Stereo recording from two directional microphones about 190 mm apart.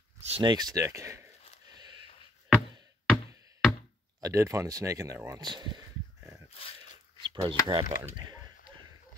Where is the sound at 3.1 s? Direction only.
Centre (ahead or behind).